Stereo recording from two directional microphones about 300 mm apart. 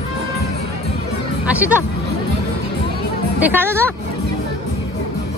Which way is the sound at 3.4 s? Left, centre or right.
Centre.